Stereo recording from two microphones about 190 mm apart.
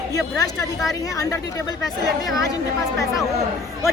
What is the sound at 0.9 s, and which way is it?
Speech, 20° left (ahead or behind).